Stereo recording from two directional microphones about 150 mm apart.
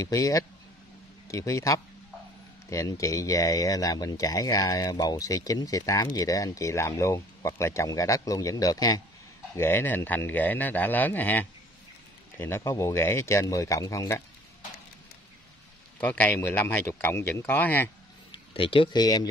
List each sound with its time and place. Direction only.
0.0 s speech: 20° left (ahead or behind)
16.0 s speech: 10° left (ahead or behind)
18.3 s speech: 35° left (ahead or behind)